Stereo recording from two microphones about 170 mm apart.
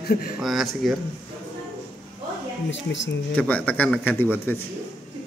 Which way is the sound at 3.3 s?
10° left (ahead or behind).